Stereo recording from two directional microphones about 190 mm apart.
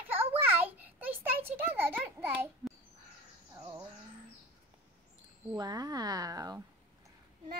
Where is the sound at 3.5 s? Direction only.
20° right (ahead or behind).